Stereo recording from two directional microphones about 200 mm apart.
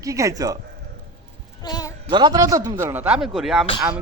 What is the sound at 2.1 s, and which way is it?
A man's voice, 20° right (ahead or behind).